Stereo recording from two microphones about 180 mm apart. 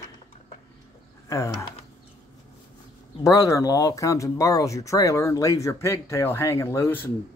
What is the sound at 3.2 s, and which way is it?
Speech, 20° left (ahead or behind).